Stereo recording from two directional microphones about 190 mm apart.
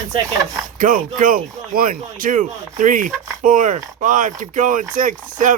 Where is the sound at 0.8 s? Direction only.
45° right (ahead or behind).